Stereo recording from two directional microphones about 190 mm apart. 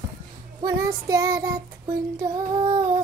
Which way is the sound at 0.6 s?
20° right (ahead or behind).